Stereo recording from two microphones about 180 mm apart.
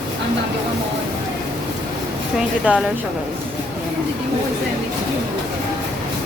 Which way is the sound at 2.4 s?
5° right (ahead or behind).